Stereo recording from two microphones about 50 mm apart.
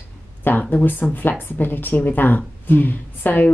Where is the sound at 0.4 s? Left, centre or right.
Left.